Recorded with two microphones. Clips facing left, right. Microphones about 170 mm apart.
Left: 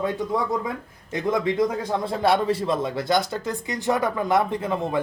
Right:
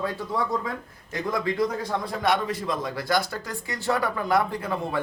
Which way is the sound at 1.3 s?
20° left (ahead or behind).